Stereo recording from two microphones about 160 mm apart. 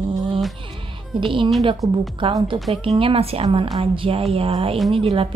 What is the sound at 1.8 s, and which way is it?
Speech, 20° right (ahead or behind).